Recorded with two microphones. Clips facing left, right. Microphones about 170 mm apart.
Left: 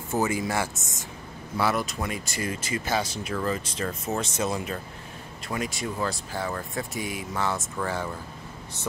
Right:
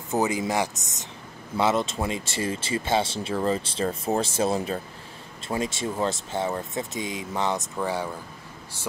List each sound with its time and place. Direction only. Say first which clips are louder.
0.1 s speech: right 2 dB; 15° right (ahead or behind)